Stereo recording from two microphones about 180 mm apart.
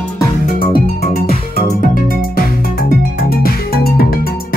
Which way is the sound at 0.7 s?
55° left (ahead or behind).